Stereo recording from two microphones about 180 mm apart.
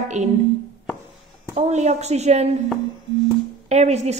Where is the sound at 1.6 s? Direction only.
40° right (ahead or behind).